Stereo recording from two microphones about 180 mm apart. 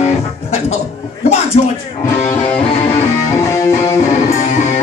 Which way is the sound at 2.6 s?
35° left (ahead or behind).